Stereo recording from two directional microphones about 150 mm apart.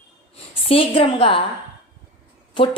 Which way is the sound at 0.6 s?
40° left (ahead or behind).